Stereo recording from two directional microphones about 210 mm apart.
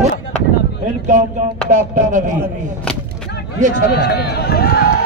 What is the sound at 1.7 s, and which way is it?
Chopping, 35° right (ahead or behind).